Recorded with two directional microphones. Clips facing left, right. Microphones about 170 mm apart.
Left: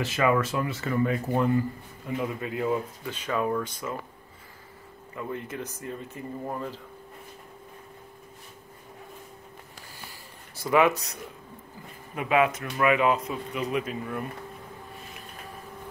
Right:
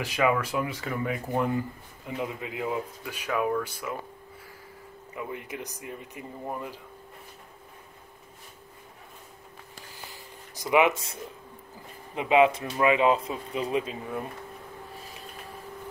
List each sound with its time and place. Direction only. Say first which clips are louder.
0.0 s speech: left 1 dB; 10° right (ahead or behind)
5.1 s speech: left 2 dB; 15° right (ahead or behind)
10.5 s speech: left 1 dB; 15° right (ahead or behind)
12.2 s speech: right 3 dB; 25° right (ahead or behind)